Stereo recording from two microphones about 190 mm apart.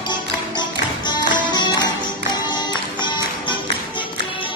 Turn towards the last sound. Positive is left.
turn(degrees=25)  # may be behind; listen again after turning